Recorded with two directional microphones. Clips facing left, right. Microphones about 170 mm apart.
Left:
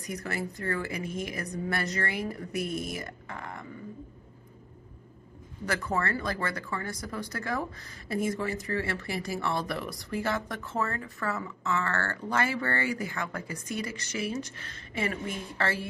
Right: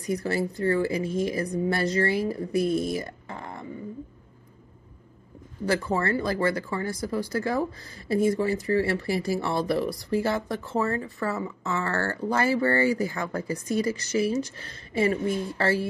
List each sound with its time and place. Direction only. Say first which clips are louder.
0.0 s a woman's voice: right 8 dB; 30° right (ahead or behind)
5.7 s speech: right 5 dB; 30° right (ahead or behind)